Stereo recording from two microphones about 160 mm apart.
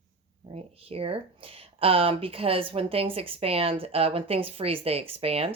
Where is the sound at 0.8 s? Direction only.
35° right (ahead or behind).